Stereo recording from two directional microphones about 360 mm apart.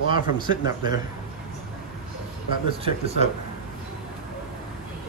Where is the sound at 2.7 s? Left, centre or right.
Centre.